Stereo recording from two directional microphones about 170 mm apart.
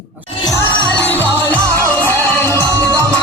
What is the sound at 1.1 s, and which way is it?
Music, 10° left (ahead or behind).